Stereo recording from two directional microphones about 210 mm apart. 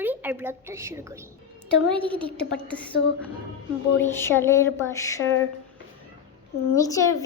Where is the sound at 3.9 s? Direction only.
10° left (ahead or behind).